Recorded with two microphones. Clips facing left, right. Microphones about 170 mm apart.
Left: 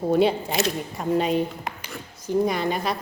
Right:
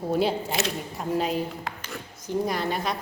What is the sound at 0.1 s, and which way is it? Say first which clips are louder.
A woman's voice: left 4 dB; 5° right (ahead or behind).